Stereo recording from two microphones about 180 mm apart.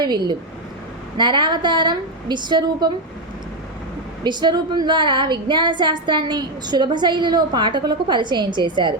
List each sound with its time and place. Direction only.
0.0 s a woman's voice: 25° right (ahead or behind)
4.2 s a woman's voice: 25° right (ahead or behind)